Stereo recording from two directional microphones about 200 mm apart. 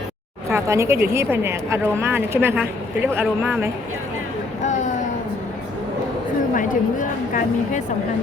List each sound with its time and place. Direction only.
0.5 s a woman's voice: 15° right (ahead or behind)
6.5 s a woman's voice: 40° left (ahead or behind)